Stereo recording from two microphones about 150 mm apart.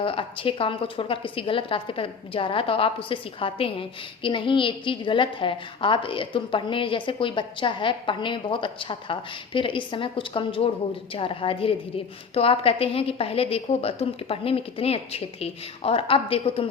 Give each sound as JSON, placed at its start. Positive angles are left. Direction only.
{"t": 0.0, "sound": "a woman's voice", "side_deg": 35}